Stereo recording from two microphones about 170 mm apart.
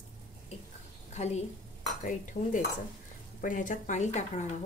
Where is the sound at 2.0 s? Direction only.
50° left (ahead or behind).